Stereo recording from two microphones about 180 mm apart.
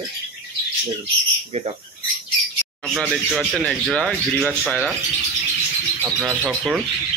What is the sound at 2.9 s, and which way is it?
Speech, 5° left (ahead or behind).